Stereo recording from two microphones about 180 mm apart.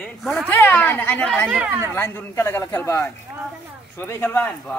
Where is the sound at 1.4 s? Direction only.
5° right (ahead or behind).